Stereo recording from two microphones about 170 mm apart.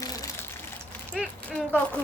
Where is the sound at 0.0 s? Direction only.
20° left (ahead or behind).